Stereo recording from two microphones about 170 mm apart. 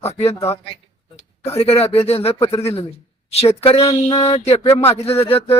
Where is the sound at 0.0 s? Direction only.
35° left (ahead or behind).